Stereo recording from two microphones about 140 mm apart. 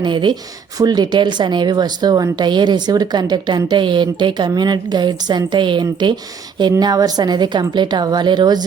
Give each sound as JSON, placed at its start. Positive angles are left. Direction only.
{"t": 0.0, "sound": "speech", "side_deg": -35}